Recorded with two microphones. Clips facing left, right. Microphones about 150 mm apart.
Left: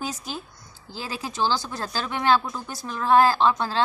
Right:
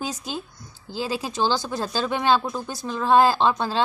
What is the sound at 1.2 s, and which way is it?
A woman's voice, 20° right (ahead or behind).